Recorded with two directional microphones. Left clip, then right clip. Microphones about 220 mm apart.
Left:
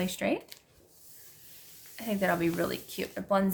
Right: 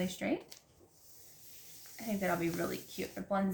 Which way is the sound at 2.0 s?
45° left (ahead or behind).